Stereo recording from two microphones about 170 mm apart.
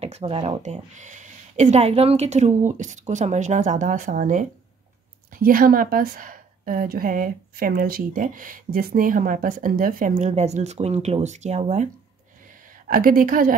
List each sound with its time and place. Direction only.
0.0 s a woman's voice: 35° right (ahead or behind)
12.8 s a woman's voice: 55° right (ahead or behind)